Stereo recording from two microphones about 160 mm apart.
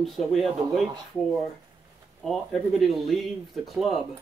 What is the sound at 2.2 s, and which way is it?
Speech, centre (ahead or behind).